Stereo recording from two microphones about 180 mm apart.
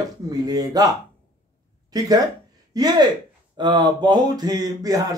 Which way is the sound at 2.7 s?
20° right (ahead or behind).